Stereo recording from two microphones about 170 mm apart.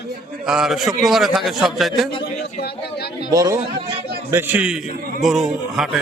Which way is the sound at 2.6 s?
75° left (ahead or behind).